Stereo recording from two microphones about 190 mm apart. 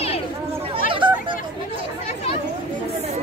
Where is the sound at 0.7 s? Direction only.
25° right (ahead or behind).